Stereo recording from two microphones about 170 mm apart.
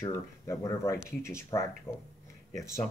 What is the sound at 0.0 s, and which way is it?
Speech, 15° left (ahead or behind).